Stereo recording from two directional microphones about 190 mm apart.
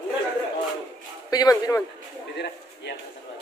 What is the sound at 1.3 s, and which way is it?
Speech, 20° left (ahead or behind).